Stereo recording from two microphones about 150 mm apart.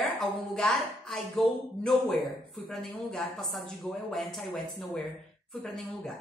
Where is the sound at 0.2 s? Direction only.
Centre (ahead or behind).